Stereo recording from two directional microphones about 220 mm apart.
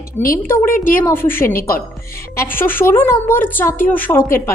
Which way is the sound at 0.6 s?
40° left (ahead or behind).